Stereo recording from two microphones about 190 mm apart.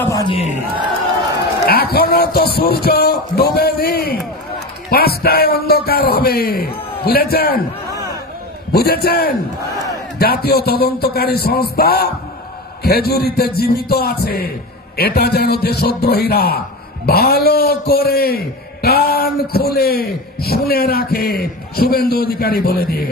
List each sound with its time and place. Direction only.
0.0 s battle cry: 15° left (ahead or behind)
1.7 s speech: 55° left (ahead or behind)
8.7 s a man's voice: 55° left (ahead or behind)